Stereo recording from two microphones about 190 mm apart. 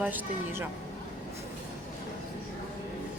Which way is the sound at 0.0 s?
10° right (ahead or behind).